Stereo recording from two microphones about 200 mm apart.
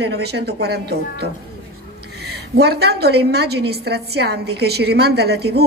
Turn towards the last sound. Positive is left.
turn(degrees=-55)  # may be behind; listen again after turning